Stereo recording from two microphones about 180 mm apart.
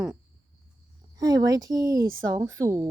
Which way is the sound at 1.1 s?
20° right (ahead or behind).